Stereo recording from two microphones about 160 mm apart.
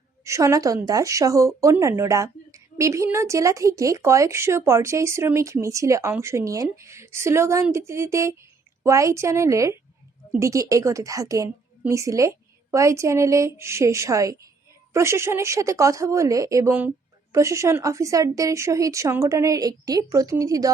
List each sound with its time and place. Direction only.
0.3 s a woman's voice: 20° right (ahead or behind)